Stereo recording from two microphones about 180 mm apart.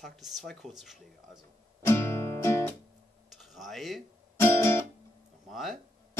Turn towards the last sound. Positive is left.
turn(degrees=0)  # may be behind; listen again after turning